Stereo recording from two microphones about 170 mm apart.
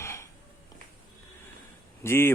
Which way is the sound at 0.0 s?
15° left (ahead or behind).